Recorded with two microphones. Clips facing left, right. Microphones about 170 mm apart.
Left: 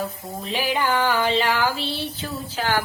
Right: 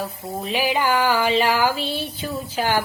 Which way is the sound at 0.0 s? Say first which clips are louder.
Right 2 dB; 10° right (ahead or behind).